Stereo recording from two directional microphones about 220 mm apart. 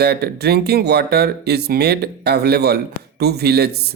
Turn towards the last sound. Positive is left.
turn(degrees=-45)  # may be behind; listen again after turning